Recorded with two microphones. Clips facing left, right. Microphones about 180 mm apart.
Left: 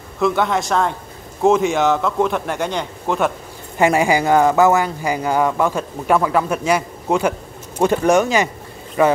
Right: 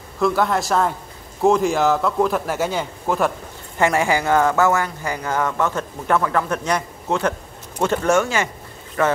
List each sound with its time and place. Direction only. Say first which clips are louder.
0.2 s a man's voice: left 1 dB; centre (ahead or behind)
3.7 s speech: left 3 dB; 15° left (ahead or behind)